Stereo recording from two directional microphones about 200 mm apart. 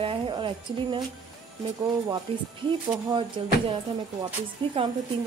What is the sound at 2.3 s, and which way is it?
A woman's voice, 25° right (ahead or behind).